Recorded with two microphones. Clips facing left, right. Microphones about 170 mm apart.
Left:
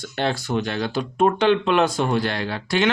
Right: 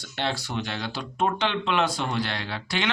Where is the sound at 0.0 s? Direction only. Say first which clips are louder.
Left 5 dB; 50° left (ahead or behind).